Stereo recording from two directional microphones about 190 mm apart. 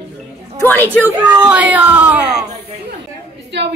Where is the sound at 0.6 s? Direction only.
10° left (ahead or behind).